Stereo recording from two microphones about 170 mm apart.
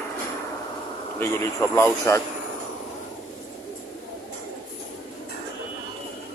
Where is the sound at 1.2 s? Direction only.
15° left (ahead or behind).